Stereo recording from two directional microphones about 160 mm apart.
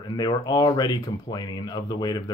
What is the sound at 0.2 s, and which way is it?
Speech, 25° left (ahead or behind).